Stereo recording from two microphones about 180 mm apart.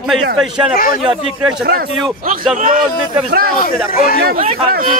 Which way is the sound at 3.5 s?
50° left (ahead or behind).